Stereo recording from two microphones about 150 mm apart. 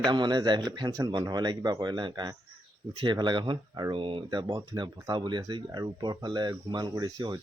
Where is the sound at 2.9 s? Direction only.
40° right (ahead or behind).